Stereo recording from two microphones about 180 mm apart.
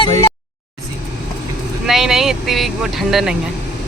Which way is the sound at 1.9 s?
Centre (ahead or behind).